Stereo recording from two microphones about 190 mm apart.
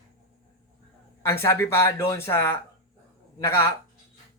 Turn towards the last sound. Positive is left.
turn(degrees=15)  # may be behind; listen again after turning